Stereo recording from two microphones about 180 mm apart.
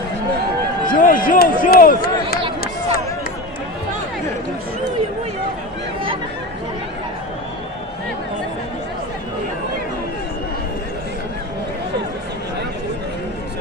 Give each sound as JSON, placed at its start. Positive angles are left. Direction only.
{"t": 0.8, "sound": "speech", "side_deg": 50}